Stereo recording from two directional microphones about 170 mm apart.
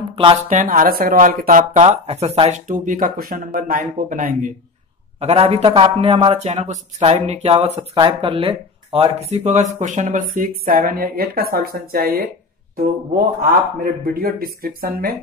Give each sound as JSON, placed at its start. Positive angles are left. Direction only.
{"t": 0.1, "sound": "a sound", "side_deg": -30}
{"t": 0.5, "sound": "speech", "side_deg": -50}
{"t": 2.7, "sound": "speech", "side_deg": -50}
{"t": 5.2, "sound": "speech", "side_deg": -35}
{"t": 14.0, "sound": "speech", "side_deg": -60}